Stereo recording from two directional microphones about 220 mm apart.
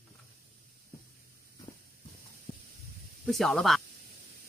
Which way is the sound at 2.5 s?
25° left (ahead or behind).